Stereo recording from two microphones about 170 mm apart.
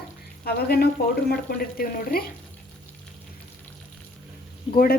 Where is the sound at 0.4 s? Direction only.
65° left (ahead or behind).